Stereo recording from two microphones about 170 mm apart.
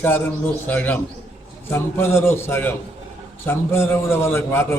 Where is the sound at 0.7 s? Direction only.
10° left (ahead or behind).